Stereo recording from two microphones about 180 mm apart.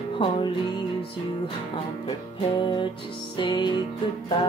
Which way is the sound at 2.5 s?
25° left (ahead or behind).